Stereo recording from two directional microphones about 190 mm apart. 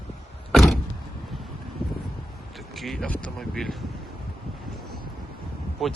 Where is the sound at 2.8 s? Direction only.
Centre (ahead or behind).